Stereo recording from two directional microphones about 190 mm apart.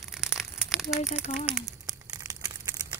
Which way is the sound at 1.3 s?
30° left (ahead or behind).